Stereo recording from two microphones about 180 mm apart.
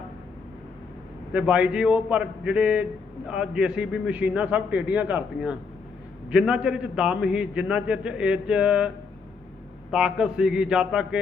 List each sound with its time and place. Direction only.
1.3 s a man's voice: 5° right (ahead or behind)
9.9 s a man's voice: 5° right (ahead or behind)